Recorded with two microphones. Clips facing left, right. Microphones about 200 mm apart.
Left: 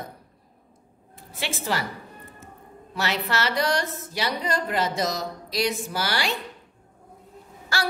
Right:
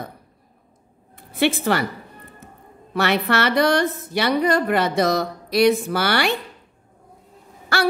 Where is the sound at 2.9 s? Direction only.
60° right (ahead or behind).